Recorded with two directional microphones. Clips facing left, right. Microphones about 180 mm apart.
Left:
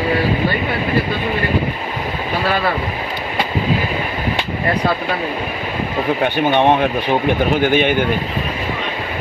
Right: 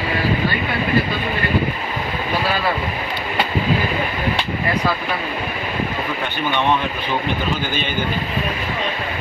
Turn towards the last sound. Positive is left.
turn(degrees=65)  # may be behind; listen again after turning